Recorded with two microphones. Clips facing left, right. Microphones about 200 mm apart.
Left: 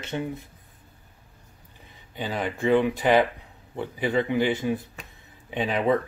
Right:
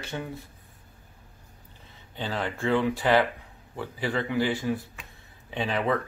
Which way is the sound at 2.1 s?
15° left (ahead or behind).